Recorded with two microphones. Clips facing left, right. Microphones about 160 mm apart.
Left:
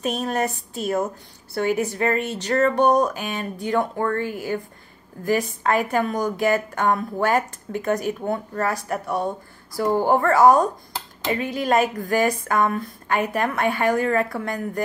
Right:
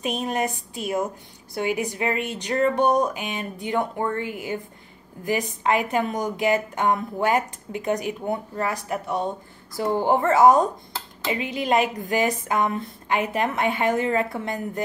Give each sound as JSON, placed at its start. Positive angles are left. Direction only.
{"t": 0.0, "sound": "a woman's voice", "side_deg": -15}
{"t": 11.4, "sound": "a woman's voice", "side_deg": 45}
{"t": 11.9, "sound": "a woman's voice", "side_deg": -20}